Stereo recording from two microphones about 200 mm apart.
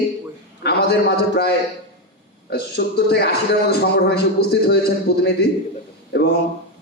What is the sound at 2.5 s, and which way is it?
A man's voice, 55° left (ahead or behind).